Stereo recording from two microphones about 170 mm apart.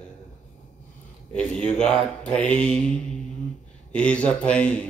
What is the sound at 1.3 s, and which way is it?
A man's voice, 5° left (ahead or behind).